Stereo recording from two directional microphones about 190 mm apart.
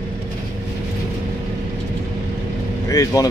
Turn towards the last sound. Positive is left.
turn(degrees=15)  # may be behind; listen again after turning